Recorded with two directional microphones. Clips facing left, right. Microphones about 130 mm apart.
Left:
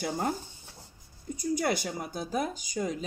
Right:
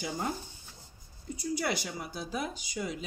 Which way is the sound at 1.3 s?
50° left (ahead or behind).